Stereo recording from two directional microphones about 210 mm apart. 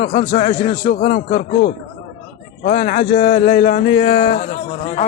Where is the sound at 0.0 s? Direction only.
35° left (ahead or behind).